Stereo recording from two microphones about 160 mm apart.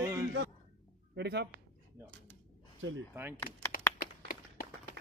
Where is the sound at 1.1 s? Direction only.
90° right.